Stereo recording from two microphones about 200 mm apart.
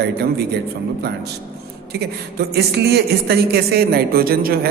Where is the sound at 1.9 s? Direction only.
55° right (ahead or behind).